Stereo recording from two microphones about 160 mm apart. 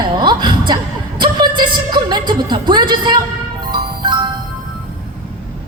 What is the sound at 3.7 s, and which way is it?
Music, 30° right (ahead or behind).